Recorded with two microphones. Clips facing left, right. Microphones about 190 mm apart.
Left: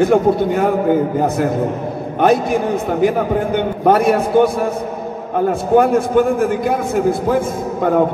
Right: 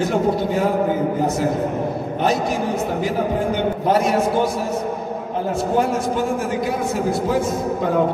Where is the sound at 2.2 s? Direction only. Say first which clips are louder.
Left 7 dB; 55° left (ahead or behind).